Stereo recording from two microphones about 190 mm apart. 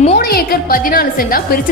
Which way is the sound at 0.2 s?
55° left (ahead or behind).